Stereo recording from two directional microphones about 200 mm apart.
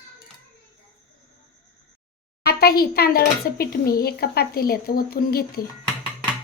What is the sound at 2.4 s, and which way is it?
Speech, 50° left (ahead or behind).